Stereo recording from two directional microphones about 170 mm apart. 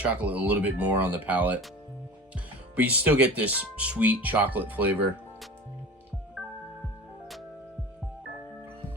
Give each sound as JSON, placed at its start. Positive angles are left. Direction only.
{"t": 0.0, "sound": "speech", "side_deg": -10}
{"t": 2.7, "sound": "speech", "side_deg": -10}